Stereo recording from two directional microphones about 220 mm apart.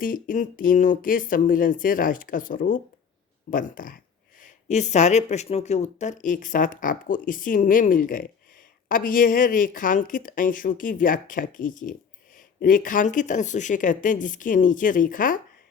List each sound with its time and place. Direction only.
0.0 s speech: 40° left (ahead or behind)